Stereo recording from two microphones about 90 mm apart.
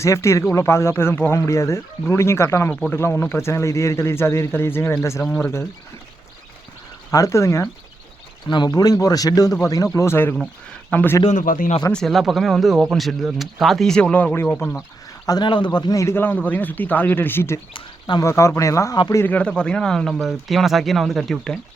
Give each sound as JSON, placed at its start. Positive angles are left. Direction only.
{"t": 0.0, "sound": "speech", "side_deg": 35}
{"t": 7.1, "sound": "speech", "side_deg": 35}
{"t": 8.4, "sound": "speech", "side_deg": 50}
{"t": 11.9, "sound": "speech", "side_deg": 5}
{"t": 15.3, "sound": "speech", "side_deg": 55}
{"t": 16.0, "sound": "speech", "side_deg": 30}
{"t": 16.2, "sound": "speech", "side_deg": 20}
{"t": 19.3, "sound": "speech", "side_deg": 10}